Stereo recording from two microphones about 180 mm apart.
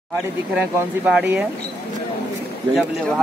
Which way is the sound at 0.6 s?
5° right (ahead or behind).